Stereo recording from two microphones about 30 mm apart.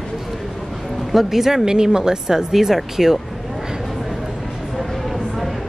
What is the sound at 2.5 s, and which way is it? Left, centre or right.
Speech, centre.